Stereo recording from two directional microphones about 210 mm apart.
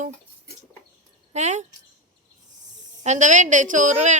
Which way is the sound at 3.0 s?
35° right (ahead or behind).